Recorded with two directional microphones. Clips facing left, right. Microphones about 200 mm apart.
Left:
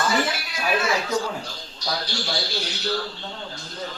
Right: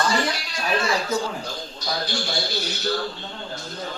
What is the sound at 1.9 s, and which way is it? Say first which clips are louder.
Speech: right 1 dB; 50° right (ahead or behind).